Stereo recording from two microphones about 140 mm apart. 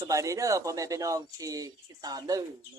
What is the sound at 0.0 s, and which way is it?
Speech, 25° right (ahead or behind).